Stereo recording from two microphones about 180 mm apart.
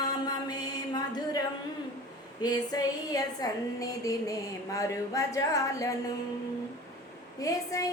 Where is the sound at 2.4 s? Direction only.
20° left (ahead or behind).